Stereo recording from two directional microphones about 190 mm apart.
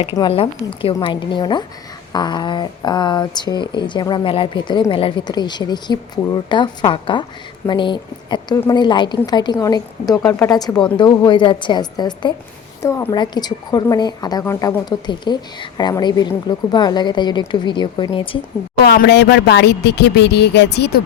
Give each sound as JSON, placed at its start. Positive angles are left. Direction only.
{"t": 0.2, "sound": "a woman's voice", "side_deg": 30}
{"t": 18.9, "sound": "speech", "side_deg": 60}